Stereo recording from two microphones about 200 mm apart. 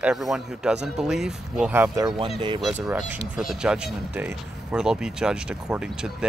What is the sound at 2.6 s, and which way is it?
Speech, 5° right (ahead or behind).